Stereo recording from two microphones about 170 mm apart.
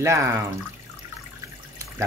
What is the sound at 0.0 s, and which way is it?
Speech, 15° right (ahead or behind).